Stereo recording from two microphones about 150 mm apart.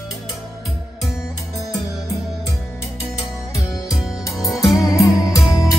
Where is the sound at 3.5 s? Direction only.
25° left (ahead or behind).